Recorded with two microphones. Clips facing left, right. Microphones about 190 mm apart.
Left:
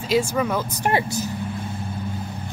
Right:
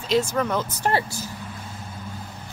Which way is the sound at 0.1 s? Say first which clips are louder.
Left 1 dB; 10° left (ahead or behind).